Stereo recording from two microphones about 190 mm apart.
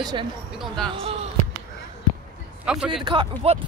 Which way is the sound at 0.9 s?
30° right (ahead or behind).